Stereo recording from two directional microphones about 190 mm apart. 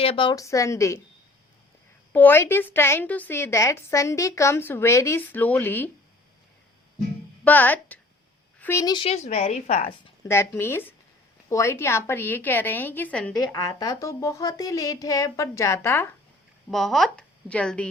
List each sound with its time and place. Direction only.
0.0 s a woman's voice: 30° left (ahead or behind)
2.1 s a woman's voice: 10° left (ahead or behind)
7.4 s a woman's voice: 10° left (ahead or behind); by 9.9 s 35° left (ahead or behind)
10.2 s a woman's voice: 15° left (ahead or behind)
16.7 s speech: centre (ahead or behind)